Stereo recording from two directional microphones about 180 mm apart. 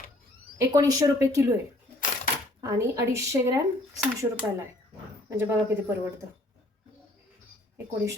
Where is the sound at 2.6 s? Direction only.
15° right (ahead or behind).